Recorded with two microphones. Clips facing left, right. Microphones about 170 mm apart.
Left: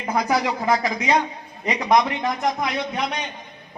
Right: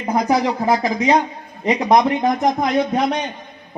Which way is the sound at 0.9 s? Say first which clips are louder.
Right 5 dB; 35° right (ahead or behind).